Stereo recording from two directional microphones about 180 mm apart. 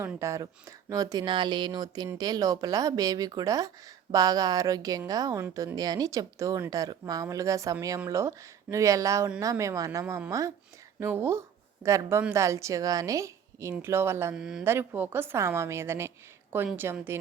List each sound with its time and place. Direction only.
0.0 s a woman's voice: 15° right (ahead or behind)
14.3 s speech: 5° right (ahead or behind)
14.6 s speech: 15° right (ahead or behind)